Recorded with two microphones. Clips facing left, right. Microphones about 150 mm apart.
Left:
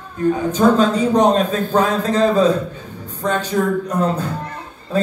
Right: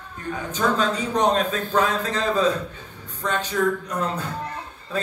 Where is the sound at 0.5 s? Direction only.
35° left (ahead or behind).